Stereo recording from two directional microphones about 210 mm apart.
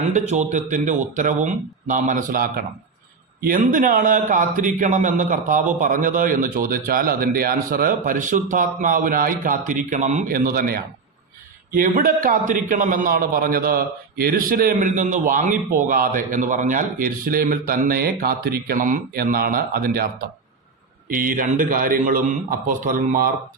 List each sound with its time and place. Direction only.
0.1 s a man's voice: 35° right (ahead or behind)
21.1 s a man's voice: 40° right (ahead or behind)